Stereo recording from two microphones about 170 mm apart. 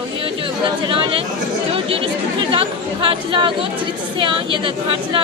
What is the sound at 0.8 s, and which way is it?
Speech, 30° right (ahead or behind).